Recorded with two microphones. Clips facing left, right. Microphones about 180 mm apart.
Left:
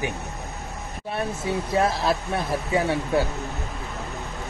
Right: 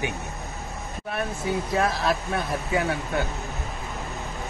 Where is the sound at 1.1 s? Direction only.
30° left (ahead or behind).